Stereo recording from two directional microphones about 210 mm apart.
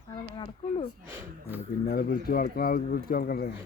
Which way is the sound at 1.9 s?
50° left (ahead or behind).